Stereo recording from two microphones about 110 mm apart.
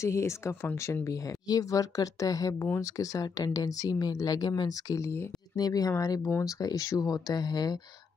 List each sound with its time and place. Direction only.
0.0 s speech: 25° left (ahead or behind)
5.6 s speech: 35° left (ahead or behind)